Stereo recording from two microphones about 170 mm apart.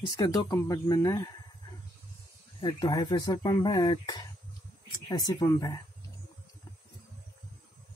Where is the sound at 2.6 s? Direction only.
25° left (ahead or behind).